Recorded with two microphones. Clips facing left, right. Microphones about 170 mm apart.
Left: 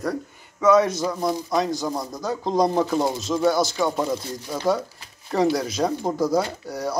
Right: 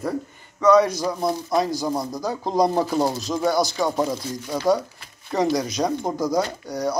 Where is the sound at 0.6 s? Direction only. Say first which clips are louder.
Right 1 dB; 5° left (ahead or behind).